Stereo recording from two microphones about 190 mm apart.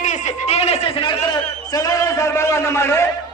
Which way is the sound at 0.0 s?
40° left (ahead or behind).